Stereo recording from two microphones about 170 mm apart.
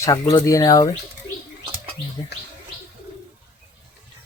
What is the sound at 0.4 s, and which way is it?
Speech, 20° left (ahead or behind).